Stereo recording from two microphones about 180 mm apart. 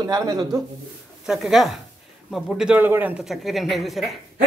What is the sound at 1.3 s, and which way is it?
A man's voice, centre (ahead or behind).